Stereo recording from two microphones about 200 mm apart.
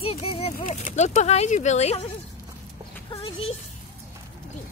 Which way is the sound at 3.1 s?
30° left (ahead or behind).